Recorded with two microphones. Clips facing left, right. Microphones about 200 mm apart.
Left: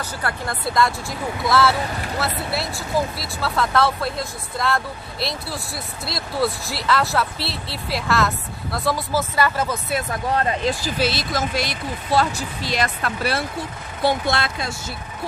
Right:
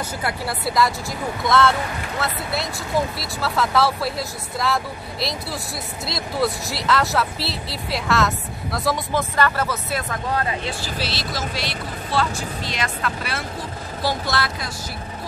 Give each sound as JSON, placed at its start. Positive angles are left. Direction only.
{"t": 0.2, "sound": "speech", "side_deg": -10}
{"t": 10.6, "sound": "speech", "side_deg": 40}
{"t": 14.0, "sound": "speech", "side_deg": 25}